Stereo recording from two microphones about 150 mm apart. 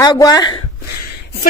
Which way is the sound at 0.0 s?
25° left (ahead or behind).